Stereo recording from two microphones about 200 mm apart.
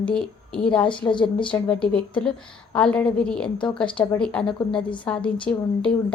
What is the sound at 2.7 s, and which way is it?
A woman's voice, 5° left (ahead or behind).